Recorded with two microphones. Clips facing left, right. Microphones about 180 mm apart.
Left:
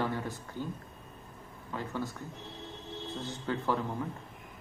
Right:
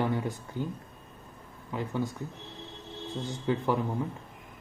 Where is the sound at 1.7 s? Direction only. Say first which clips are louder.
Right 4 dB; 15° right (ahead or behind).